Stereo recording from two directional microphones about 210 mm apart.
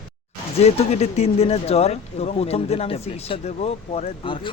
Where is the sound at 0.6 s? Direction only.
30° left (ahead or behind).